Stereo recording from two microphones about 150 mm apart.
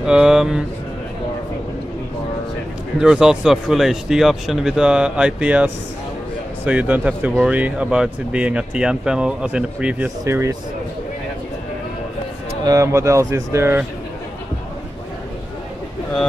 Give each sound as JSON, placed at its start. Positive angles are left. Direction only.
{"t": 0.0, "sound": "speech", "side_deg": -5}
{"t": 3.0, "sound": "speech", "side_deg": -5}
{"t": 12.6, "sound": "speech", "side_deg": -20}